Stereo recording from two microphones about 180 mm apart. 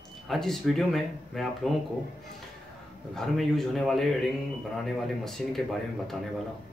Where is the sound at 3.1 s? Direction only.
Centre (ahead or behind).